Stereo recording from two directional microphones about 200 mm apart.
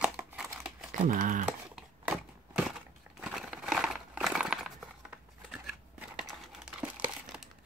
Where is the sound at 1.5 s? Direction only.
5° right (ahead or behind).